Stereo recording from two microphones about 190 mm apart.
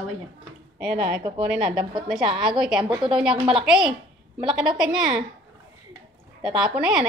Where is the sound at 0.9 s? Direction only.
25° right (ahead or behind).